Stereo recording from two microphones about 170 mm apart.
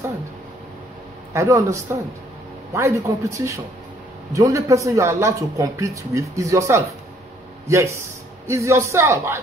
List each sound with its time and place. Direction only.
1.3 s a man's voice: 15° right (ahead or behind)